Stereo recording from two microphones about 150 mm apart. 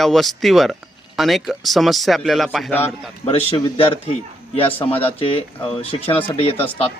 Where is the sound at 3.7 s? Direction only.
40° left (ahead or behind).